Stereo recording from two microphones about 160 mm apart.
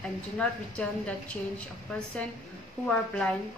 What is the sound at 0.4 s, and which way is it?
Speech, 5° left (ahead or behind).